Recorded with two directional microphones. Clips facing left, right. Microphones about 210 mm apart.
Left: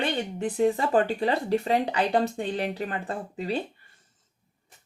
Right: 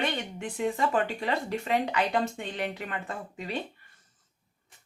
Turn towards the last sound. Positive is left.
turn(degrees=35)  # may be behind; listen again after turning